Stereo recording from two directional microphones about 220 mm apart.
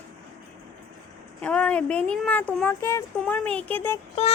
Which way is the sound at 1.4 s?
5° left (ahead or behind).